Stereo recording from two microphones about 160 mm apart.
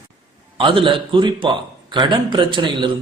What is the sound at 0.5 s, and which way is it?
A man's voice, 30° right (ahead or behind).